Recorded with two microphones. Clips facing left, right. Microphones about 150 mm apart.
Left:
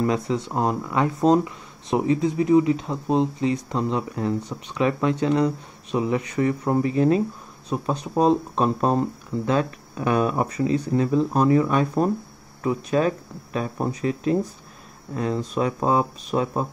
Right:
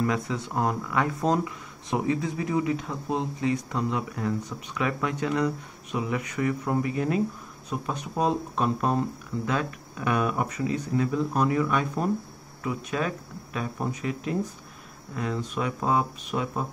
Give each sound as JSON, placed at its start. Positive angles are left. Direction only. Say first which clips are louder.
{"t": 0.0, "sound": "speech", "louder": "left 4 dB", "side_deg": 25}